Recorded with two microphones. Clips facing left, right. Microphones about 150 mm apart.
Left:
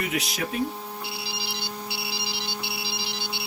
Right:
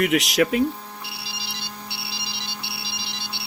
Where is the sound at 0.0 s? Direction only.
75° right (ahead or behind).